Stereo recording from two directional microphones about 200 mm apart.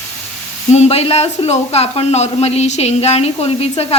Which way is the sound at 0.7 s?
30° left (ahead or behind).